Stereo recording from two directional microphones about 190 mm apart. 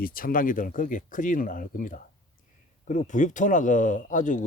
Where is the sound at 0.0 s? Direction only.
50° left (ahead or behind).